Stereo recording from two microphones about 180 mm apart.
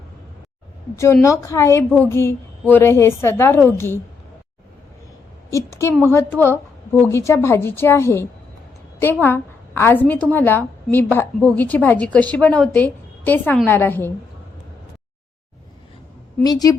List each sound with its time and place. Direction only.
0.9 s a woman's voice: 15° left (ahead or behind)
6.1 s a woman's voice: 15° left (ahead or behind)
16.4 s a woman's voice: 20° left (ahead or behind)